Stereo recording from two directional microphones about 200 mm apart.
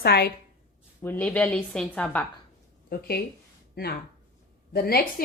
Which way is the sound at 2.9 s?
50° left (ahead or behind).